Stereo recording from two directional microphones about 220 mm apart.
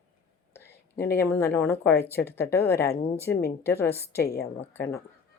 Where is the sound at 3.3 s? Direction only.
45° left (ahead or behind).